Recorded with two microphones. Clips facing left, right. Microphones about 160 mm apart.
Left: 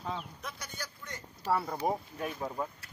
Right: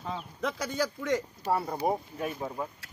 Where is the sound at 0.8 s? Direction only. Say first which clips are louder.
Right 16 dB; 90° right.